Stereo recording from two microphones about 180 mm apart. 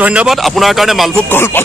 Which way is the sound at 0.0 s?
5° right (ahead or behind).